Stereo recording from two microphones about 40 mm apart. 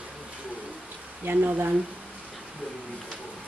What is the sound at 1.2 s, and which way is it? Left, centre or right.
Speech, right.